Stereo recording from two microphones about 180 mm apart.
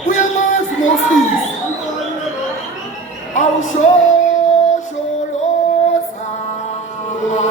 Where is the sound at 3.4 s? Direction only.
40° left (ahead or behind).